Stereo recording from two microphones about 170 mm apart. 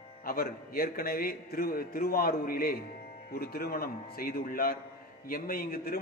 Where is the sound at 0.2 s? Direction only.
60° left (ahead or behind).